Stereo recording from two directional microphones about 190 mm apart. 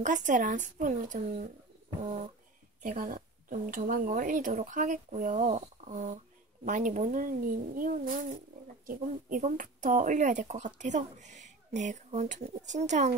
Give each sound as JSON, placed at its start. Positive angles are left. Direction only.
{"t": 0.0, "sound": "speech", "side_deg": -40}
{"t": 2.8, "sound": "a woman's voice", "side_deg": -45}